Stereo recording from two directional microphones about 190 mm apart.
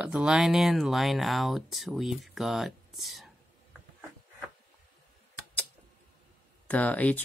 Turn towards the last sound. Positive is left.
turn(degrees=10)  # may be behind; listen again after turning